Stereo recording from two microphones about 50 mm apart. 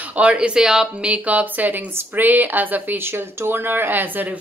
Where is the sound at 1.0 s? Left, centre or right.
Right.